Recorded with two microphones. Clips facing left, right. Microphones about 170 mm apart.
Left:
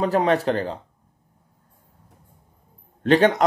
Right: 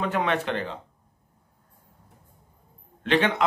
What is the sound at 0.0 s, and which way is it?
Speech, 35° left (ahead or behind).